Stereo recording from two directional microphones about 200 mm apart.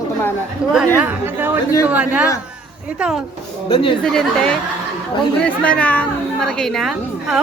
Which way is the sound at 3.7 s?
25° left (ahead or behind).